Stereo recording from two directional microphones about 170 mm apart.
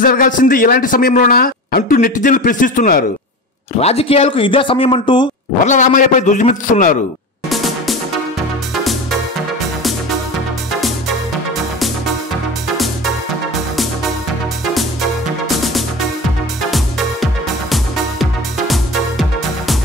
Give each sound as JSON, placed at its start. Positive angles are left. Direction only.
{"t": 0.0, "sound": "a man's voice", "side_deg": 55}
{"t": 3.8, "sound": "speech", "side_deg": 35}
{"t": 5.7, "sound": "a man's voice", "side_deg": 45}
{"t": 7.4, "sound": "music", "side_deg": 0}
{"t": 12.7, "sound": "music", "side_deg": 0}
{"t": 15.4, "sound": "music", "side_deg": 0}